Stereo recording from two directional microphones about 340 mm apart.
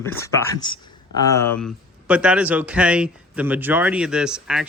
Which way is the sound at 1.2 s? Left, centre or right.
Centre.